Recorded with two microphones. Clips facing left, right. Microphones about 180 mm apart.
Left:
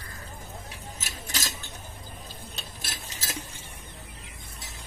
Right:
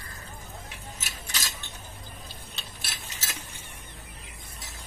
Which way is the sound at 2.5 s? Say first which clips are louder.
Left 2 dB; 40° left (ahead or behind).